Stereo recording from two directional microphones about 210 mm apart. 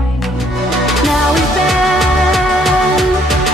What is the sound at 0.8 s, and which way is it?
Music, centre (ahead or behind).